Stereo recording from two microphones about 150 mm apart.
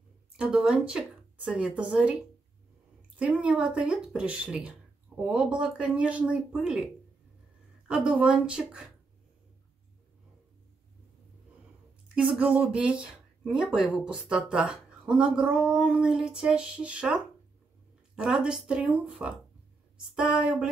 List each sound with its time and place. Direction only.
0.4 s speech: 5° right (ahead or behind)
3.2 s speech: 5° right (ahead or behind)
7.9 s speech: 5° right (ahead or behind)
12.2 s speech: 5° right (ahead or behind)